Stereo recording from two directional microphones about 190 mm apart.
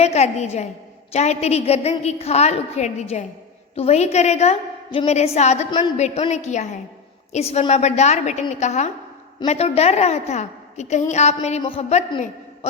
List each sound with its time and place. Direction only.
0.0 s a woman's voice: 35° left (ahead or behind)